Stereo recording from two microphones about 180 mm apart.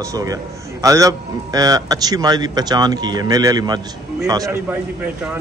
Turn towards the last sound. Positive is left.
turn(degrees=-15)  # may be behind; listen again after turning